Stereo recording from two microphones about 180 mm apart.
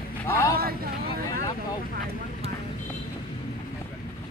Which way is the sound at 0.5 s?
55° right (ahead or behind).